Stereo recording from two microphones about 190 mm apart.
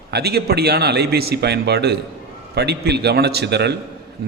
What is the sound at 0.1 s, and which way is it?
A man's voice, 55° right (ahead or behind).